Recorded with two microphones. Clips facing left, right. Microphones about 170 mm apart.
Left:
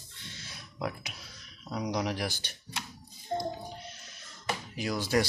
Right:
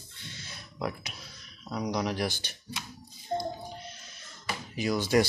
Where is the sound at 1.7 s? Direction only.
5° left (ahead or behind).